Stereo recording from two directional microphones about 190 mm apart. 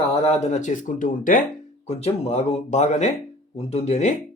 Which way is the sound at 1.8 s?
35° left (ahead or behind).